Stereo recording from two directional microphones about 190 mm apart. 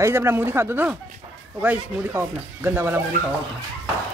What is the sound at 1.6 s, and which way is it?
Speech, 10° right (ahead or behind).